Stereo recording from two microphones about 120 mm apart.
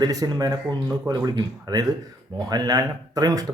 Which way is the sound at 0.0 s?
30° right (ahead or behind).